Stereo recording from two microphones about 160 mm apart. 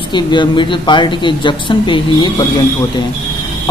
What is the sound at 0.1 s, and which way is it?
A woman's voice, 30° left (ahead or behind).